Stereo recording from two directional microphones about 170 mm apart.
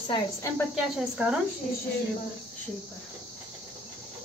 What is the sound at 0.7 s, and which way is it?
Speech, 5° right (ahead or behind).